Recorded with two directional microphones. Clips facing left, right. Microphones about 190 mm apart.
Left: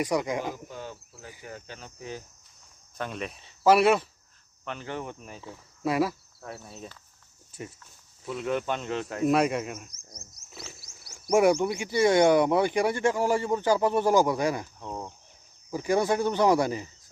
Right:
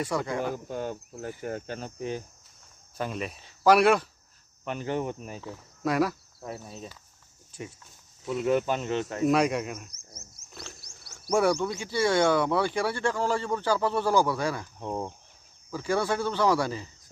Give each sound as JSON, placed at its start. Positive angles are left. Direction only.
{"t": 0.0, "sound": "speech", "side_deg": 15}
{"t": 0.7, "sound": "speech", "side_deg": -50}
{"t": 2.0, "sound": "speech", "side_deg": -20}
{"t": 3.0, "sound": "speech", "side_deg": -5}
{"t": 4.6, "sound": "speech", "side_deg": -15}
{"t": 5.4, "sound": "speech", "side_deg": 0}
{"t": 6.4, "sound": "cricket", "side_deg": -15}
{"t": 7.6, "sound": "speech", "side_deg": 0}
{"t": 9.8, "sound": "a sound", "side_deg": -5}
{"t": 10.5, "sound": "wild animals", "side_deg": 0}
{"t": 11.1, "sound": "speech", "side_deg": 15}
{"t": 15.7, "sound": "speech", "side_deg": 15}